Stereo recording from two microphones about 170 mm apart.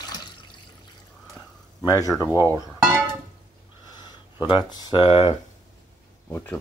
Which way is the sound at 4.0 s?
25° left (ahead or behind).